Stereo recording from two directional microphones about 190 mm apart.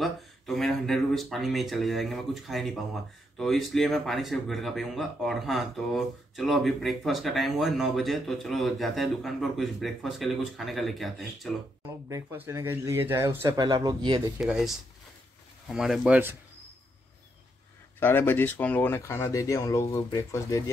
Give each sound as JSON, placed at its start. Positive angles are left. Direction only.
{"t": 0.0, "sound": "speech", "side_deg": 0}
{"t": 12.1, "sound": "speech", "side_deg": -10}
{"t": 14.4, "sound": "speech", "side_deg": 0}
{"t": 15.7, "sound": "speech", "side_deg": 0}
{"t": 17.9, "sound": "speech", "side_deg": 10}